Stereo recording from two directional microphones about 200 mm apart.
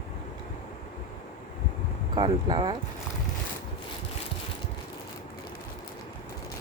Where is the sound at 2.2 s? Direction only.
20° right (ahead or behind).